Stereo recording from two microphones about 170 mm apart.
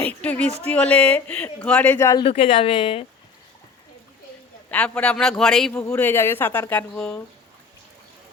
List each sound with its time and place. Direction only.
0.2 s speech: 10° left (ahead or behind)
2.2 s a woman's voice: 30° left (ahead or behind)
4.7 s a man's voice: 5° left (ahead or behind)
5.9 s speech: 15° left (ahead or behind)